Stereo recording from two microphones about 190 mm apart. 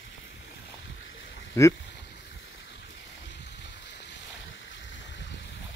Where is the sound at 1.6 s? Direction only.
15° left (ahead or behind).